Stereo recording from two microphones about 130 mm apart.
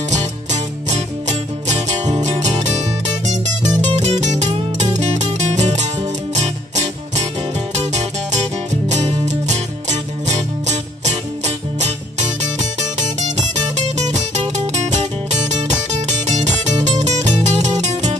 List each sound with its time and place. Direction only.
0.1 s music: 65° right (ahead or behind)